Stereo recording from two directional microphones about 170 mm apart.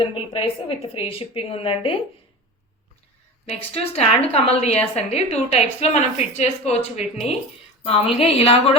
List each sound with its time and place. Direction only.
0.1 s a woman's voice: 35° left (ahead or behind)
3.4 s a woman's voice: 40° left (ahead or behind)
8.1 s a woman's voice: 35° left (ahead or behind)